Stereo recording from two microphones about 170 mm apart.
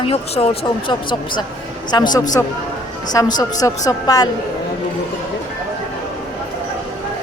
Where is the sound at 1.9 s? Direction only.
25° left (ahead or behind).